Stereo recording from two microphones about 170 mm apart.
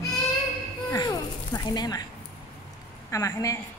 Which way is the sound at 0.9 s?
20° left (ahead or behind).